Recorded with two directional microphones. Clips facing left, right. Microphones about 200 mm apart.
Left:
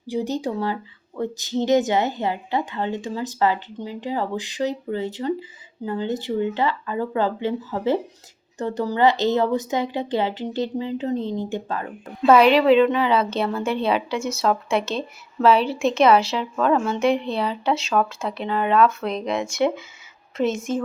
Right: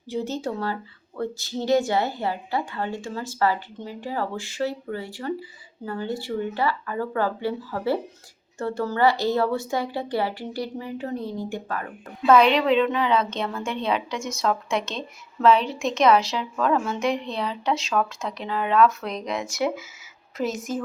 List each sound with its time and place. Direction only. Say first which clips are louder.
0.1 s speech: left 3 dB; 15° left (ahead or behind)
12.3 s a woman's voice: left 3 dB; 5° left (ahead or behind)